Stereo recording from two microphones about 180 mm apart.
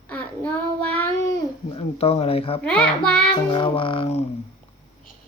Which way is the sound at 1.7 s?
30° left (ahead or behind).